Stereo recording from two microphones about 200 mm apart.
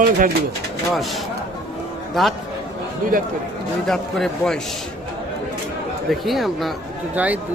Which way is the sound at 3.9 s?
Centre (ahead or behind).